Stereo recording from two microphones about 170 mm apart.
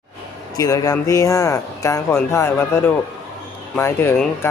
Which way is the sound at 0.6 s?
20° left (ahead or behind).